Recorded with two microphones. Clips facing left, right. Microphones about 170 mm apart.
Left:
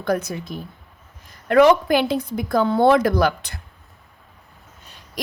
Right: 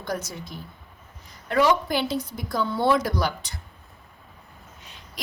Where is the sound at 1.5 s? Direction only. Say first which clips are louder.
Left 7 dB; 60° left (ahead or behind).